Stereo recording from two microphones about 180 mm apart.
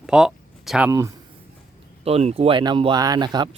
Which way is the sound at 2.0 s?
35° right (ahead or behind).